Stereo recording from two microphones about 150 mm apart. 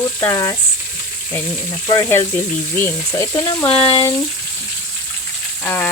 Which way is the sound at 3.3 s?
25° left (ahead or behind).